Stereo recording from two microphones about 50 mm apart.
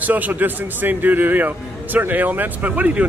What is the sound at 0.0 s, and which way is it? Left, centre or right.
A man's voice, right.